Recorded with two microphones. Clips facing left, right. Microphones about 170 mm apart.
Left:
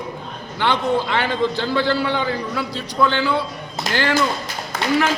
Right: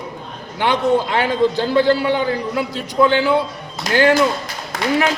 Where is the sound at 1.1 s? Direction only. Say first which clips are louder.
Right 4 dB; 40° right (ahead or behind).